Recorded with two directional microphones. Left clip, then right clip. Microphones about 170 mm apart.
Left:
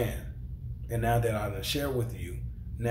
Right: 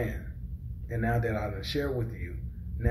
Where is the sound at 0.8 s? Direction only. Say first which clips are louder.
Left 2 dB; 20° left (ahead or behind).